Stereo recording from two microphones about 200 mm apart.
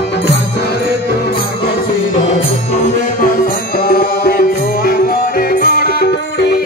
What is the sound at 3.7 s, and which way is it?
Music, 45° left (ahead or behind).